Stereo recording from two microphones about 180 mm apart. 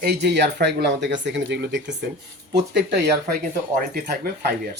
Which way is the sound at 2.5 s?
70° right (ahead or behind).